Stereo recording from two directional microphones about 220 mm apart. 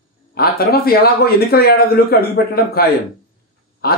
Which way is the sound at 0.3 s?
45° left (ahead or behind).